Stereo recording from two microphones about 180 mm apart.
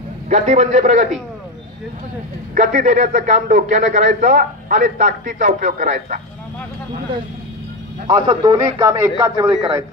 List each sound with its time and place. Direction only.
0.3 s a man's voice: 45° right (ahead or behind)
2.5 s a man's voice: 45° right (ahead or behind)
8.1 s speech: 25° right (ahead or behind)